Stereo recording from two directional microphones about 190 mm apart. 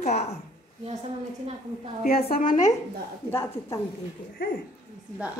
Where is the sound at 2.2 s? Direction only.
50° left (ahead or behind).